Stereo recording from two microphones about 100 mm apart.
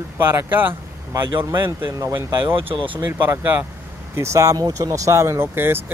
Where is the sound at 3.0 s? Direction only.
20° right (ahead or behind).